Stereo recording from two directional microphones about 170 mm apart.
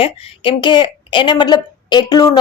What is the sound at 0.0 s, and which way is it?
A woman's voice, 30° left (ahead or behind).